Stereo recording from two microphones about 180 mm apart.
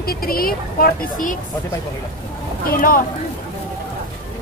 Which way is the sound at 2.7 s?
50° left (ahead or behind).